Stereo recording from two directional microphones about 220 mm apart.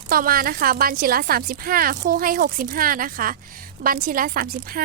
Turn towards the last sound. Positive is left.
turn(degrees=-40)  # may be behind; listen again after turning